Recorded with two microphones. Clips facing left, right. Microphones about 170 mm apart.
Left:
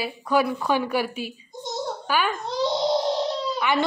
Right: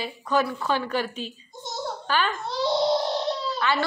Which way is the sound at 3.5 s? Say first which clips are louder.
Left 2 dB; 15° left (ahead or behind).